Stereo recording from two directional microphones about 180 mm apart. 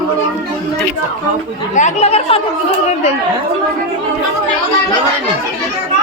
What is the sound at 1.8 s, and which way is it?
Speech, 40° left (ahead or behind).